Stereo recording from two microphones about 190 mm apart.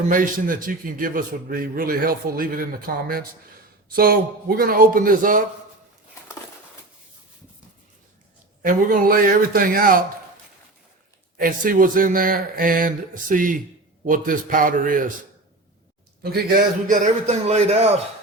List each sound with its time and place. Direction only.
0.1 s a man's voice: 45° right (ahead or behind)
8.6 s a man's voice: 45° right (ahead or behind)
11.3 s a man's voice: 50° right (ahead or behind)
16.2 s a man's voice: 55° right (ahead or behind); by 17.8 s 35° right (ahead or behind)